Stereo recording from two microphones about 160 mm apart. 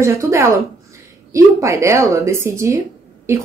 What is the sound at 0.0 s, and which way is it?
A woman's voice, 20° right (ahead or behind).